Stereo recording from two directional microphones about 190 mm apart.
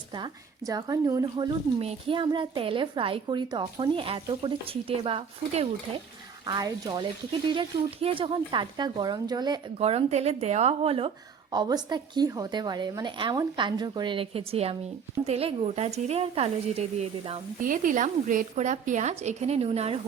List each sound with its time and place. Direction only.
0.1 s a woman's voice: 20° right (ahead or behind)
17.6 s a woman's voice: 45° right (ahead or behind)